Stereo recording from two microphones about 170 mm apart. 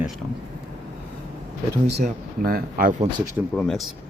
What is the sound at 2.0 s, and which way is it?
Speech, 60° right (ahead or behind).